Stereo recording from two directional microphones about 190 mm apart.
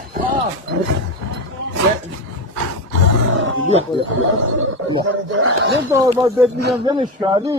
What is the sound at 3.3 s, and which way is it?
Wild animals, 90° right.